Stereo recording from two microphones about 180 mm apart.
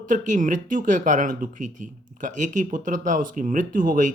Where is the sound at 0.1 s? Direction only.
45° right (ahead or behind).